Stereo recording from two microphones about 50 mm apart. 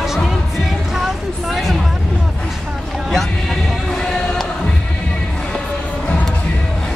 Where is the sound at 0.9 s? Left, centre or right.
Centre.